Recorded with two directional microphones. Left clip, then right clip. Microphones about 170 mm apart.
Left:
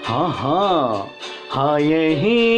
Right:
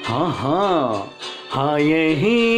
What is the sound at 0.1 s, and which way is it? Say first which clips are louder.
Speech: left 1 dB; 5° right (ahead or behind).